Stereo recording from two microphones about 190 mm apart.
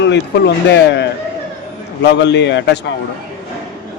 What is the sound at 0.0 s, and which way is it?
Speech, 65° left (ahead or behind).